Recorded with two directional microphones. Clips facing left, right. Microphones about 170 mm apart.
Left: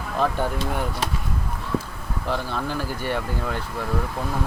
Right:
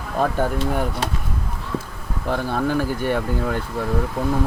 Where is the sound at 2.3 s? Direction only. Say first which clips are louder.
Right 6 dB; 50° right (ahead or behind).